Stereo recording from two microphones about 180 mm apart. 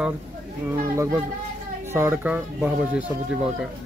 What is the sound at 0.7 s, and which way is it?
Speech, 15° right (ahead or behind).